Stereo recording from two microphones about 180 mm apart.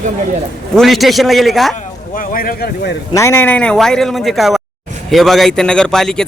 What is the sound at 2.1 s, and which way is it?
Speech, 50° left (ahead or behind).